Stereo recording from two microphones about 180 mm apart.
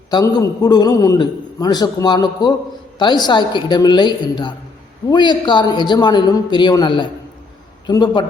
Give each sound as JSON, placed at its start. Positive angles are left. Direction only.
{"t": 0.1, "sound": "a man's voice", "side_deg": 20}